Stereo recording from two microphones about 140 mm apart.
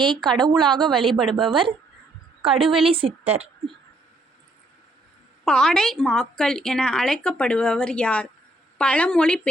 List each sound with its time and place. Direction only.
0.0 s a woman's voice: 35° right (ahead or behind)
1.2 s a woman's voice: 5° left (ahead or behind)
1.5 s a woman's voice: 40° right (ahead or behind)
5.5 s a woman's voice: 5° left (ahead or behind)